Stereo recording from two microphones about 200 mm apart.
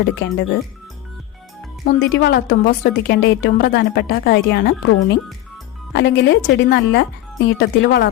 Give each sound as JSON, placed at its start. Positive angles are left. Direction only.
{"t": 0.0, "sound": "a woman's voice", "side_deg": 55}
{"t": 2.0, "sound": "a woman's voice", "side_deg": 60}